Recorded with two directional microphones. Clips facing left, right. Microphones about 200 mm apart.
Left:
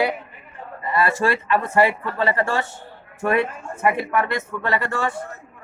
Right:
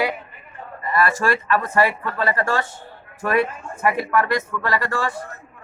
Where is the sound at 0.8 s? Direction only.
25° left (ahead or behind).